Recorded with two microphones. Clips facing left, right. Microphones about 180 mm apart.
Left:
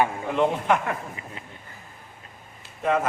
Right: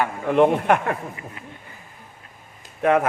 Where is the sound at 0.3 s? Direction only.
60° right (ahead or behind).